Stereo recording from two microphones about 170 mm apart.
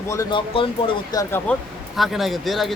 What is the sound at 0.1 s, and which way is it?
Speech, 25° left (ahead or behind).